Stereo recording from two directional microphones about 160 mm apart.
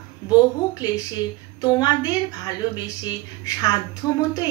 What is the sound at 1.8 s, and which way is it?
Speech, 25° left (ahead or behind).